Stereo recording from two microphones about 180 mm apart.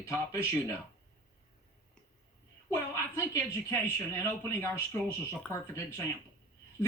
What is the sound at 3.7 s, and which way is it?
Speech, 15° left (ahead or behind).